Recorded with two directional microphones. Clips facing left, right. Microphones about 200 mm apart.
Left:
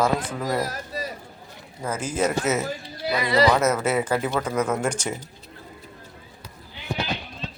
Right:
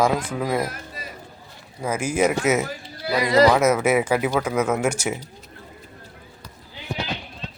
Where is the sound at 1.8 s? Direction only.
10° right (ahead or behind).